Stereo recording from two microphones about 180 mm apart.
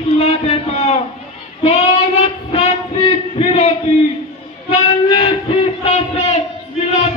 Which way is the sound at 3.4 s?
35° left (ahead or behind).